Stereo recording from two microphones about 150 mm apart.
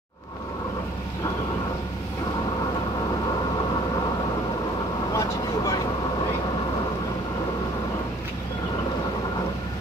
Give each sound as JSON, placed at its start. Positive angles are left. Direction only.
{"t": 5.1, "sound": "vehicle", "side_deg": 20}